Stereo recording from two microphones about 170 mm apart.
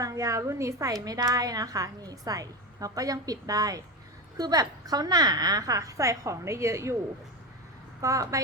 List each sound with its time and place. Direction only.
0.0 s speech: 20° right (ahead or behind)
8.0 s speech: 20° right (ahead or behind)